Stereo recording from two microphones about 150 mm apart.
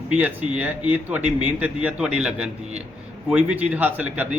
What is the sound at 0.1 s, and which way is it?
A man's voice, 10° right (ahead or behind).